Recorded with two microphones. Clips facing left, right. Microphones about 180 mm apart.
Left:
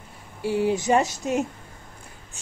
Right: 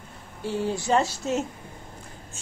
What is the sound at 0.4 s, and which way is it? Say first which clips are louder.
A woman's voice: left 5 dB; 10° left (ahead or behind).